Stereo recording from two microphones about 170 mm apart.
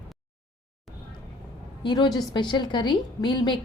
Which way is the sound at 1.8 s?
25° left (ahead or behind).